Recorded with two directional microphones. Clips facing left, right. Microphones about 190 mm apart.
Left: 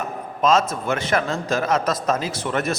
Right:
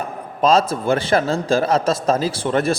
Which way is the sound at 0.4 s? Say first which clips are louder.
Right 3 dB; 35° right (ahead or behind).